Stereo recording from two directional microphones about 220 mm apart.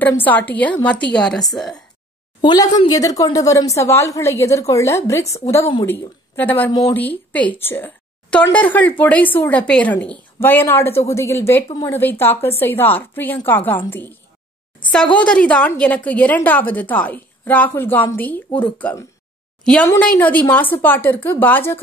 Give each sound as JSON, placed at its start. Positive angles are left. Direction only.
{"t": 0.0, "sound": "a woman's voice", "side_deg": 10}
{"t": 2.4, "sound": "a woman's voice", "side_deg": 20}
{"t": 15.1, "sound": "a woman's voice", "side_deg": 5}